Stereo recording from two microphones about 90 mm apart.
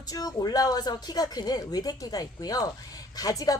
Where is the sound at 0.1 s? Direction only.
45° left (ahead or behind).